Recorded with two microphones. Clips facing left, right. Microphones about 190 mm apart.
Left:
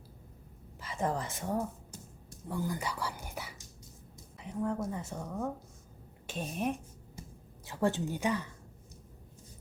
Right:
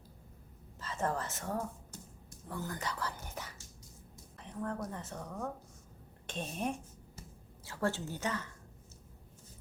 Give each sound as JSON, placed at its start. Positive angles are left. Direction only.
{"t": 0.8, "sound": "a woman's voice", "side_deg": 15}
{"t": 4.4, "sound": "a sound", "side_deg": 10}
{"t": 4.9, "sound": "a woman's voice", "side_deg": 10}
{"t": 7.6, "sound": "a woman's voice", "side_deg": 15}